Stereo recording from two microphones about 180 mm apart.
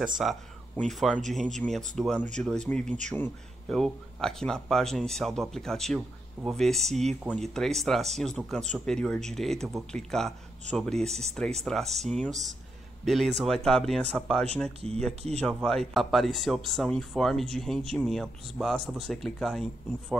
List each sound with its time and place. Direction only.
0.0 s speech: centre (ahead or behind)
15.4 s speech: centre (ahead or behind)